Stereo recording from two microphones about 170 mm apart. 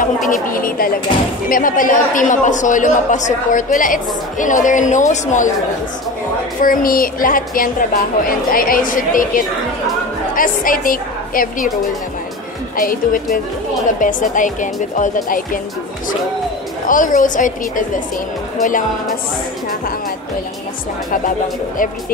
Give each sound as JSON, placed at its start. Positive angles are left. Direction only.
{"t": 0.3, "sound": "a woman's voice", "side_deg": 55}
{"t": 6.6, "sound": "a woman's voice", "side_deg": 55}
{"t": 12.7, "sound": "a woman's voice", "side_deg": 55}
{"t": 16.8, "sound": "a man's voice", "side_deg": 50}